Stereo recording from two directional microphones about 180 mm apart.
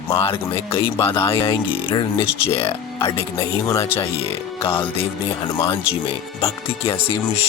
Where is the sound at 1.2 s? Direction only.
30° left (ahead or behind).